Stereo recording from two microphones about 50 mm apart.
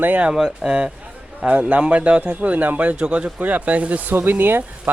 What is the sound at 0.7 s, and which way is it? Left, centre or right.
Speech, centre.